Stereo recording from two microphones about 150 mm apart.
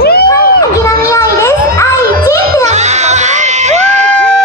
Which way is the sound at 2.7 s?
50° right (ahead or behind).